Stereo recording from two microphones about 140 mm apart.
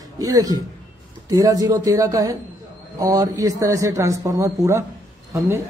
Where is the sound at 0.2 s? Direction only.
25° right (ahead or behind).